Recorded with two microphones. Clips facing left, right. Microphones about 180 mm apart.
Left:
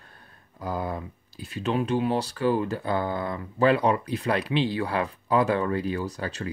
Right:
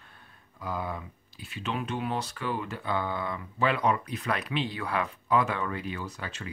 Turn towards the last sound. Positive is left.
turn(degrees=35)  # may be behind; listen again after turning